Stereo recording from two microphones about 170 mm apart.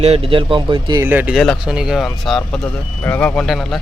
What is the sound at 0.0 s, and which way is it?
Speech, 35° right (ahead or behind).